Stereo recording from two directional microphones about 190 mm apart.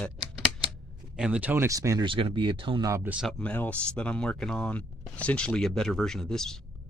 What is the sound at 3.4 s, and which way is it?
Speech, 10° left (ahead or behind).